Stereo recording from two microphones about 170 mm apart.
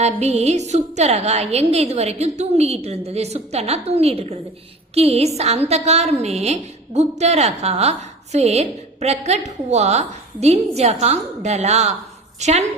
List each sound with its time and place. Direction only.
0.0 s a woman's voice: 40° right (ahead or behind)